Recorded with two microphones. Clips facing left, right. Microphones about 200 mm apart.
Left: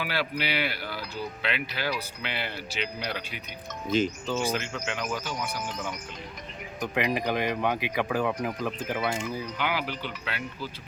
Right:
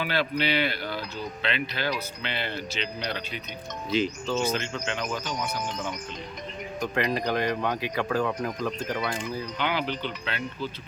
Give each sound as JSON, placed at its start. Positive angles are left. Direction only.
{"t": 0.0, "sound": "speech", "side_deg": 10}
{"t": 3.9, "sound": "speech", "side_deg": 50}
{"t": 4.3, "sound": "speech", "side_deg": 10}
{"t": 6.7, "sound": "speech", "side_deg": 15}